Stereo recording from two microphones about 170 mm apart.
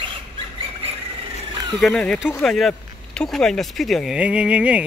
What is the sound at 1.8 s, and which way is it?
Speech, 5° left (ahead or behind).